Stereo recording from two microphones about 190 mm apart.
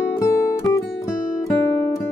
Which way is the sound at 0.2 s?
15° left (ahead or behind).